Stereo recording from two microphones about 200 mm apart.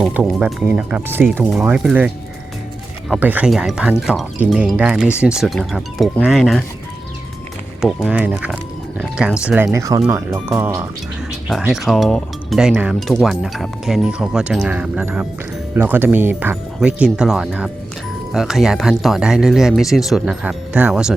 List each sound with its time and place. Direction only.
0.0 s speech: 5° right (ahead or behind)
8.0 s speech: 5° right (ahead or behind)
11.6 s speech: centre (ahead or behind)